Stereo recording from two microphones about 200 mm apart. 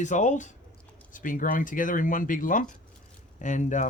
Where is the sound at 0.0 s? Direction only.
35° left (ahead or behind).